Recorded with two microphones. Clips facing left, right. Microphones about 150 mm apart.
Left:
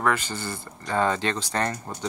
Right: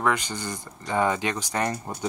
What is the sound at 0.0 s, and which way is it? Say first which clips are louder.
Speech: even; 15° right (ahead or behind).